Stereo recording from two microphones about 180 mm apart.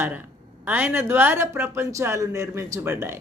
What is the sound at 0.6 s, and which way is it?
Speech, 10° right (ahead or behind).